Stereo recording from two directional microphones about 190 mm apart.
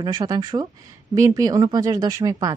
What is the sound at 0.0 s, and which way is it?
Speech, 20° right (ahead or behind).